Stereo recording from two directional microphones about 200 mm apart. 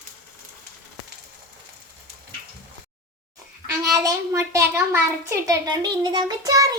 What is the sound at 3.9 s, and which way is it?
A child's voice, 15° right (ahead or behind).